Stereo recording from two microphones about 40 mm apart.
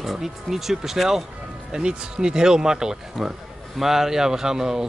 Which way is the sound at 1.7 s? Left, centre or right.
Right.